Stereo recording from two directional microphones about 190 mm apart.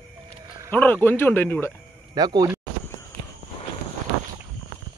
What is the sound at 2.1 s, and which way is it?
Speech, 20° right (ahead or behind).